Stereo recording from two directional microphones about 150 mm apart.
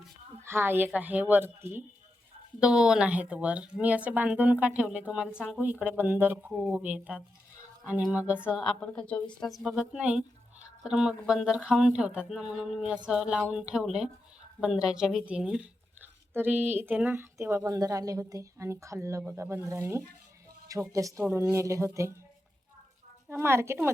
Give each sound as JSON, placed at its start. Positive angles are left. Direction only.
{"t": 0.4, "sound": "a woman's voice", "side_deg": -15}
{"t": 8.6, "sound": "a woman's voice", "side_deg": 5}
{"t": 23.3, "sound": "a woman's voice", "side_deg": -15}